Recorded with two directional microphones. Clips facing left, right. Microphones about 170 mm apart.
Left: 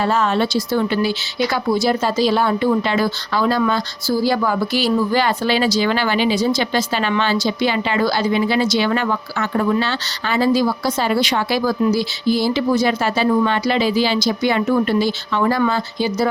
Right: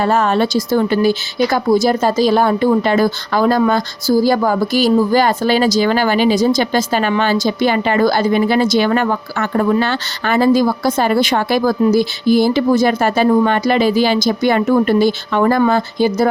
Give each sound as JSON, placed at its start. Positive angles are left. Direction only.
{"t": 0.0, "sound": "a woman's voice", "side_deg": -50}